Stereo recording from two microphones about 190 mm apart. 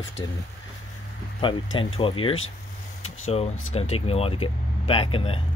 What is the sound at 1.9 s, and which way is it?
Speech, 30° left (ahead or behind).